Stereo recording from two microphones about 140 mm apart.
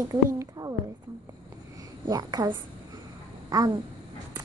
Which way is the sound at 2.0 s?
25° right (ahead or behind).